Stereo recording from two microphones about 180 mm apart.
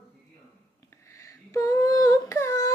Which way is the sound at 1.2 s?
15° left (ahead or behind).